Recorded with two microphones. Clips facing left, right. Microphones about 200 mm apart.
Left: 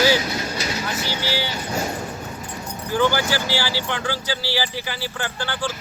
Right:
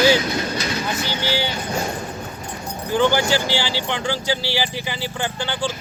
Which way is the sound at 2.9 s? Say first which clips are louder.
Right 2 dB; 20° right (ahead or behind).